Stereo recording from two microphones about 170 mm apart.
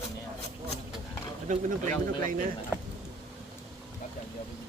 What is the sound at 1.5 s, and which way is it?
Speech, 45° right (ahead or behind).